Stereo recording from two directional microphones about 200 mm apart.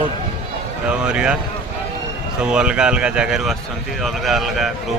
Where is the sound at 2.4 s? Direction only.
5° right (ahead or behind).